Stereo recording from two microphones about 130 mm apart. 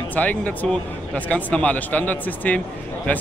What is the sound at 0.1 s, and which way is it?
A man's voice, 10° left (ahead or behind).